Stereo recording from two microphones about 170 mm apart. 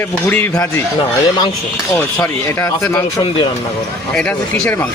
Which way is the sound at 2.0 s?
10° left (ahead or behind).